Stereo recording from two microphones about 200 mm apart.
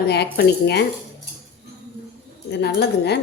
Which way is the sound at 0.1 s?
55° left (ahead or behind).